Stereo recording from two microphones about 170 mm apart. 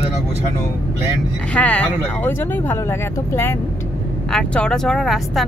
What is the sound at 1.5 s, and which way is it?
Speech, 5° left (ahead or behind).